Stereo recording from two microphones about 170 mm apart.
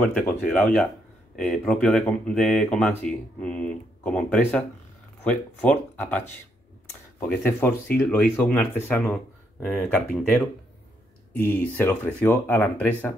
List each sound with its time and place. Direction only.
0.0 s speech: 10° left (ahead or behind)